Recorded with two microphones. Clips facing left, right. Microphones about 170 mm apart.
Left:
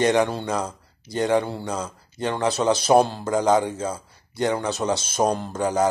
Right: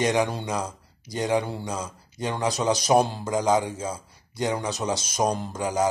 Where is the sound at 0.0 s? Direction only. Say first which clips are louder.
Left 4 dB; 30° left (ahead or behind).